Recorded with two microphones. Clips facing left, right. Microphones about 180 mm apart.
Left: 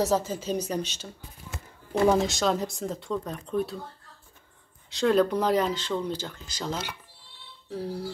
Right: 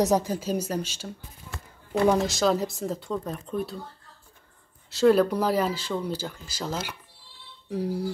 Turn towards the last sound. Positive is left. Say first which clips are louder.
# right 4 dB
turn(degrees=-15)  # may be behind; listen again after turning